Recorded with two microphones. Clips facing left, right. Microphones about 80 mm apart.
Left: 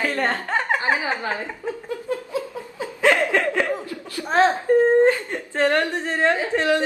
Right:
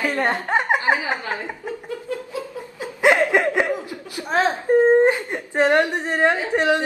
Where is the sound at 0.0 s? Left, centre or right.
Centre.